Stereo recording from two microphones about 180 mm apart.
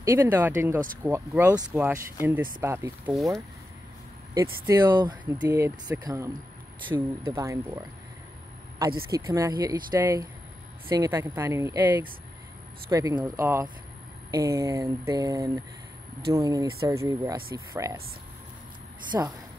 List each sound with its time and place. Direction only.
0.0 s speech: 15° right (ahead or behind)
4.3 s speech: 20° right (ahead or behind)
9.1 s speech: 15° right (ahead or behind)
19.1 s speech: 15° right (ahead or behind)